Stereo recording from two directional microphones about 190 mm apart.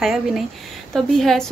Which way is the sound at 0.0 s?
Centre (ahead or behind).